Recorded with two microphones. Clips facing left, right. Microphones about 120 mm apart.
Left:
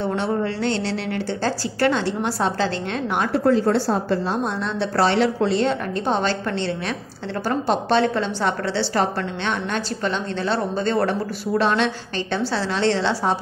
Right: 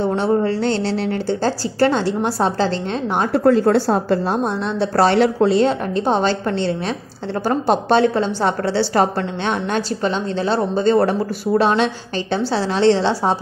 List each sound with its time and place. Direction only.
0.0 s a woman's voice: 35° right (ahead or behind)
3.3 s a woman's voice: 55° right (ahead or behind)
4.9 s a woman's voice: 45° right (ahead or behind)
5.9 s a woman's voice: 35° right (ahead or behind)
7.9 s a woman's voice: 35° right (ahead or behind)
10.8 s a woman's voice: 30° right (ahead or behind)